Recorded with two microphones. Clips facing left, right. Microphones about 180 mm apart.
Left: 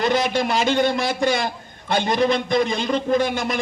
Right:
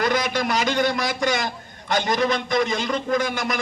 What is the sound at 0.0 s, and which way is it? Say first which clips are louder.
A man's voice: left 2 dB; 25° left (ahead or behind).